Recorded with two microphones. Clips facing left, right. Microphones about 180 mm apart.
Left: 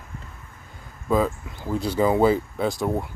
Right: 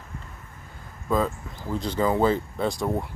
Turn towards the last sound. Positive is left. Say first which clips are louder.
# left 2 dB
turn(degrees=0)  # may be behind; listen again after turning